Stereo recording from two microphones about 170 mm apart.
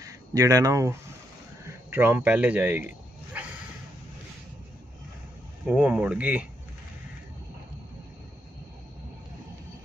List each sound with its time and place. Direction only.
0.0 s speech: 20° right (ahead or behind)
5.7 s speech: 5° right (ahead or behind)